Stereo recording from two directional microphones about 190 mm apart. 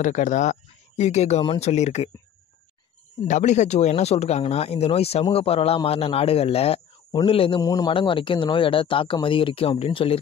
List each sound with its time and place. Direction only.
0.0 s speech: 40° left (ahead or behind)
3.3 s speech: 40° left (ahead or behind)